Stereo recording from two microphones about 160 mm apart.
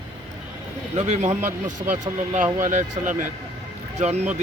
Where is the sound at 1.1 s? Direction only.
50° right (ahead or behind).